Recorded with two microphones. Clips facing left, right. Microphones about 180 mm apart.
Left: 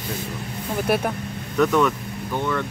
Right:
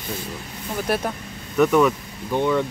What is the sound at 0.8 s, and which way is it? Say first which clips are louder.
Speech: left 2 dB; 5° left (ahead or behind).